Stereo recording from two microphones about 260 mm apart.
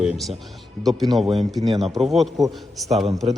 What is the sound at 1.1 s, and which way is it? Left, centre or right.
Speech, centre.